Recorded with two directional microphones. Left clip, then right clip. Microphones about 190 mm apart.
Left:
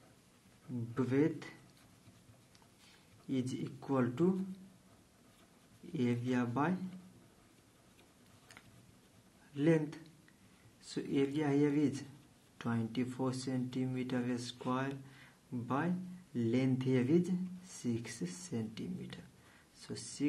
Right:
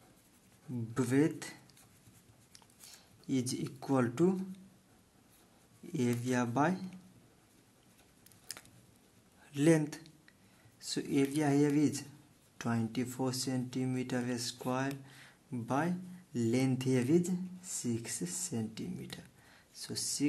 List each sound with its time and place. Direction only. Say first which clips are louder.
0.9 s speech: right 2 dB; 35° right (ahead or behind)
3.3 s speech: right 3 dB; 35° right (ahead or behind)
5.9 s speech: right 2 dB; 35° right (ahead or behind)
9.5 s speech: right 3 dB; 35° right (ahead or behind)